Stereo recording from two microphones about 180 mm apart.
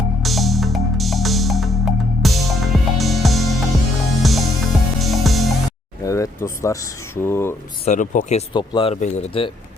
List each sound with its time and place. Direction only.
0.2 s music: centre (ahead or behind)
6.0 s a sound: 20° left (ahead or behind)
7.2 s speech: 15° left (ahead or behind)
7.9 s speech: 45° left (ahead or behind)
8.5 s speech: 30° left (ahead or behind)
9.0 s speech: 40° left (ahead or behind)